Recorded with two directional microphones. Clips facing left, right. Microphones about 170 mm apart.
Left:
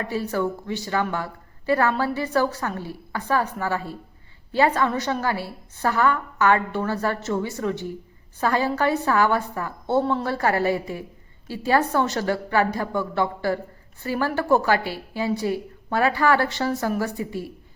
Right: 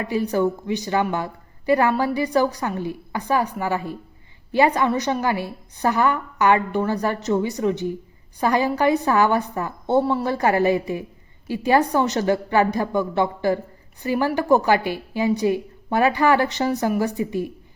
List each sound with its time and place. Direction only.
0.0 s a woman's voice: 15° right (ahead or behind)